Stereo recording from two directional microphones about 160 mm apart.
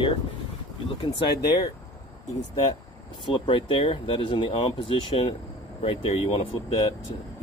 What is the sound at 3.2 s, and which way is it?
Speech, 30° left (ahead or behind).